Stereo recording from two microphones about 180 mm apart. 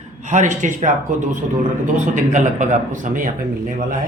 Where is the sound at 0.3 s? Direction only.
45° right (ahead or behind).